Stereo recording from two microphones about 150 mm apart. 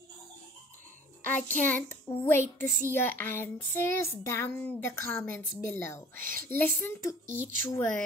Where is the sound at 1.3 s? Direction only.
10° left (ahead or behind).